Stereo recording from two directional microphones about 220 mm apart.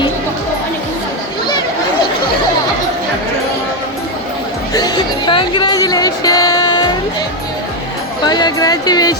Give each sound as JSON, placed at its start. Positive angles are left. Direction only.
{"t": 4.7, "sound": "music", "side_deg": 20}
{"t": 8.2, "sound": "music", "side_deg": 20}